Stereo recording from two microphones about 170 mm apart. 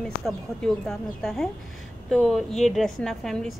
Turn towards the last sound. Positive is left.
turn(degrees=0)  # may be behind; listen again after turning